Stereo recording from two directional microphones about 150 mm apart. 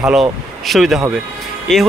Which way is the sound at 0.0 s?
Centre (ahead or behind).